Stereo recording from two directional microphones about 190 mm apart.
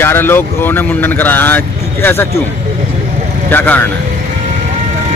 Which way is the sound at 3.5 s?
10° left (ahead or behind).